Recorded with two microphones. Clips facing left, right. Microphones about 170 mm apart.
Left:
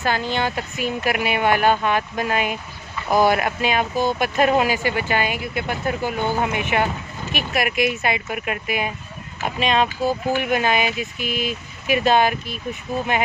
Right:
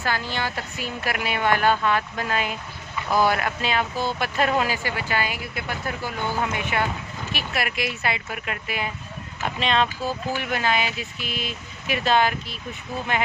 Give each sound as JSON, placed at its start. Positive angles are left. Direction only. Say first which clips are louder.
{"t": 0.0, "sound": "speech", "louder": "left 5 dB", "side_deg": 20}